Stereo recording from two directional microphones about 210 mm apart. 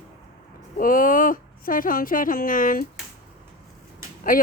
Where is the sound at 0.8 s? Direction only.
40° left (ahead or behind).